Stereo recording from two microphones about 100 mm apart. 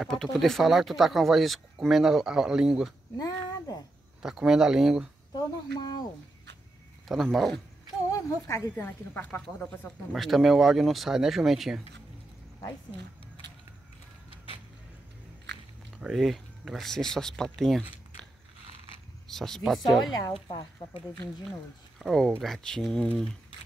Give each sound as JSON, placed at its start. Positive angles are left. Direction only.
{"t": 0.0, "sound": "speech", "side_deg": 0}
{"t": 3.2, "sound": "speech", "side_deg": 40}
{"t": 4.2, "sound": "speech", "side_deg": -5}
{"t": 5.3, "sound": "speech", "side_deg": 45}
{"t": 7.1, "sound": "speech", "side_deg": 0}
{"t": 8.5, "sound": "speech", "side_deg": 25}
{"t": 10.1, "sound": "speech", "side_deg": 0}
{"t": 16.0, "sound": "speech", "side_deg": 0}
{"t": 19.2, "sound": "speech", "side_deg": 5}
{"t": 20.4, "sound": "speech", "side_deg": 55}
{"t": 21.5, "sound": "speech", "side_deg": 5}